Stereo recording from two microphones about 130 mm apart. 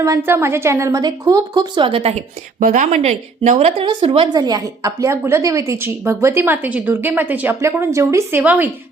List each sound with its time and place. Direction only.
0.0 s a woman's voice: 20° right (ahead or behind); by 2.2 s 55° right (ahead or behind)
2.6 s a woman's voice: 85° right; by 4.4 s 45° right (ahead or behind)
4.4 s a woman's voice: 30° right (ahead or behind); by 8.7 s 15° right (ahead or behind)